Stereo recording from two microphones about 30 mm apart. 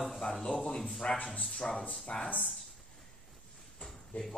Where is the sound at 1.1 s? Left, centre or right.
Left.